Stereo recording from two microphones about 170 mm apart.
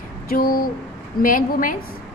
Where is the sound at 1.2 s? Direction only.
50° left (ahead or behind).